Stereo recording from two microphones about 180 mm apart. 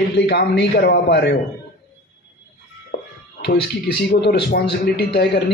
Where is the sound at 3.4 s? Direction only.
65° left (ahead or behind).